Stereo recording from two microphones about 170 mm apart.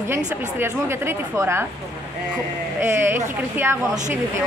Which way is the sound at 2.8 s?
15° right (ahead or behind).